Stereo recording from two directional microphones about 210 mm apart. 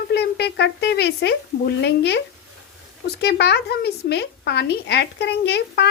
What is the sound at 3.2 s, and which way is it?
Speech, 50° left (ahead or behind).